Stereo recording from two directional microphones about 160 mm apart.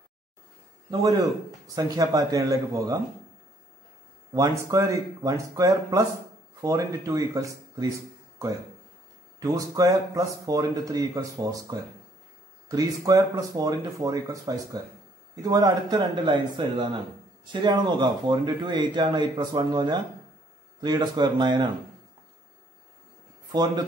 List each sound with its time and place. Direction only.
0.8 s speech: 25° right (ahead or behind)
4.3 s speech: 20° right (ahead or behind)
9.4 s speech: 20° right (ahead or behind)